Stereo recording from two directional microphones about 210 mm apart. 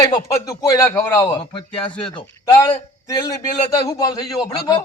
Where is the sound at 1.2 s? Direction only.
25° left (ahead or behind).